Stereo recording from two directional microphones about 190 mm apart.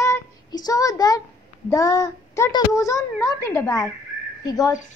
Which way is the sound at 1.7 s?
15° left (ahead or behind).